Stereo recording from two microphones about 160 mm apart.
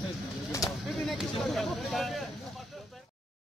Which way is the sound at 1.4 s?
Centre (ahead or behind).